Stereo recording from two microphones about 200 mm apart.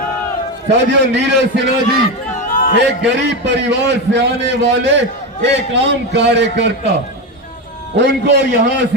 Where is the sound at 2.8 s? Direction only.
60° right (ahead or behind).